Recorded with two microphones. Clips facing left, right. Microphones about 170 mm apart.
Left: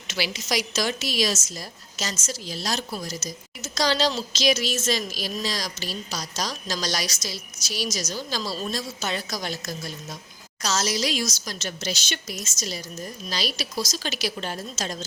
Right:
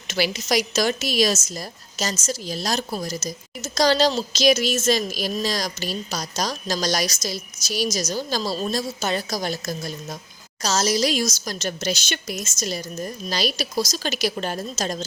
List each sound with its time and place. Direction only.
0.1 s a woman's voice: 45° right (ahead or behind)